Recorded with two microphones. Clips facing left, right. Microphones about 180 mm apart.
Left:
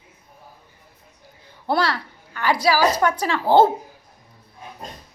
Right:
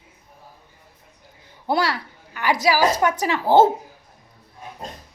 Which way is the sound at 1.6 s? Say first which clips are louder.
Even; 15° right (ahead or behind).